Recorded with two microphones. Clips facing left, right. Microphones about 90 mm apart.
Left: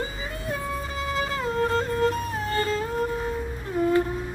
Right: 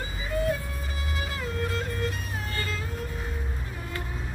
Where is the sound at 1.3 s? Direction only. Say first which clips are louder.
Left 7 dB; 35° left (ahead or behind).